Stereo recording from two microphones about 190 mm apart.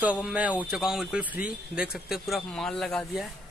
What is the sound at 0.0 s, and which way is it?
Speech, 5° right (ahead or behind).